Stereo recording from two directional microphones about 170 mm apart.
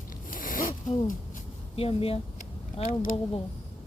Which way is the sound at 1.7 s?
35° left (ahead or behind).